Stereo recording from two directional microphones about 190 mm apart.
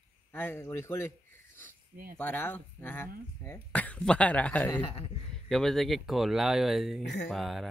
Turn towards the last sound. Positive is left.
turn(degrees=0)  # may be behind; listen again after turning